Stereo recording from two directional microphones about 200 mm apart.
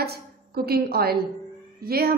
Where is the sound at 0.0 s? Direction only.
50° right (ahead or behind).